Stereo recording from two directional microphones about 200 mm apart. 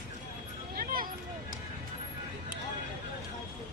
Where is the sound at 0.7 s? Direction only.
45° right (ahead or behind).